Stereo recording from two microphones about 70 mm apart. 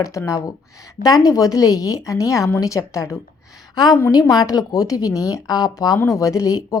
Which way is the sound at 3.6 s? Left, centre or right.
Left.